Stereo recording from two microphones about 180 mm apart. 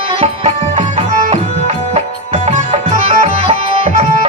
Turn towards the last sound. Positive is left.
turn(degrees=-35)  # may be behind; listen again after turning